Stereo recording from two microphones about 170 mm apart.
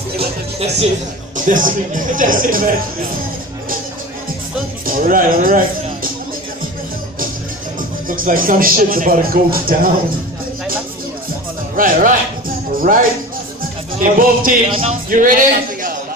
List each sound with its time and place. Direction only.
0.6 s speech: 40° right (ahead or behind)
1.3 s speech: 50° right (ahead or behind)
4.8 s speech: 55° right (ahead or behind)
8.2 s speech: 55° right (ahead or behind)
11.7 s speech: 55° right (ahead or behind)
12.7 s music: 55° right (ahead or behind)
13.9 s speech: 55° right (ahead or behind)
14.7 s speech: 35° right (ahead or behind)
15.0 s a man's voice: 50° right (ahead or behind)